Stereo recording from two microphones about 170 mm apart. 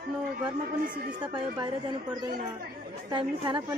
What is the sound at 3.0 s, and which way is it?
Speech, 25° right (ahead or behind).